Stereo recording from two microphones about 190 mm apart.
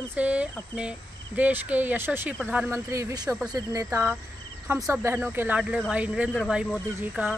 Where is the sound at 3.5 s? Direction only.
20° right (ahead or behind).